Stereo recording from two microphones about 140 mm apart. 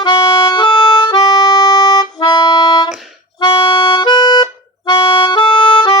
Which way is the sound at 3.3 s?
35° left (ahead or behind).